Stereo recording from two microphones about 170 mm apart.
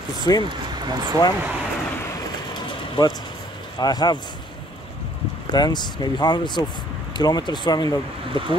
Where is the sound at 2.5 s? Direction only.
25° left (ahead or behind).